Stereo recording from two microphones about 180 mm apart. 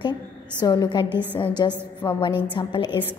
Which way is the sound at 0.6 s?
25° left (ahead or behind).